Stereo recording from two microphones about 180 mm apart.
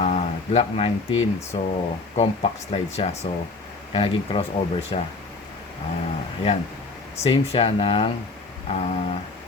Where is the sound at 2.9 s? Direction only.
35° left (ahead or behind).